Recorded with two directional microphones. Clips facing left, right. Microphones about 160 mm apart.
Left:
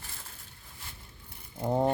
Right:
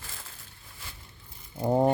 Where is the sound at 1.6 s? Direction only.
15° right (ahead or behind).